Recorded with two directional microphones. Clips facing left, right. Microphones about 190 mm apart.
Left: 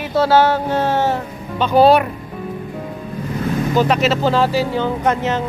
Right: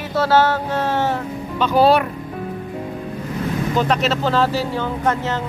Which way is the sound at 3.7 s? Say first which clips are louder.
Left 3 dB; 5° left (ahead or behind).